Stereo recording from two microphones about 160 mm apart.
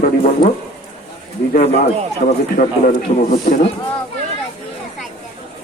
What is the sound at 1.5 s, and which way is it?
Speech, 45° left (ahead or behind).